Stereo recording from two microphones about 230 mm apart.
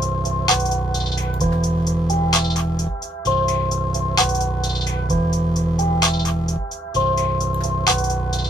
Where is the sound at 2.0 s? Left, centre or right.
Centre.